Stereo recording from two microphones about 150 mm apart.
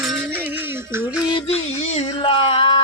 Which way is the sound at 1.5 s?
45° left (ahead or behind).